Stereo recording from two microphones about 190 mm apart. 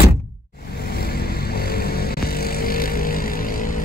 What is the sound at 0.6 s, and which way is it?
Vehicle, 55° left (ahead or behind).